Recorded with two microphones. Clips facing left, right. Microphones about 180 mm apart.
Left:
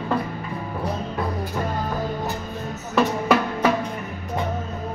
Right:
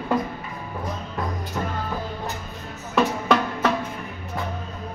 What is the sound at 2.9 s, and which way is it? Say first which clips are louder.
Music: left 1 dB; 5° left (ahead or behind).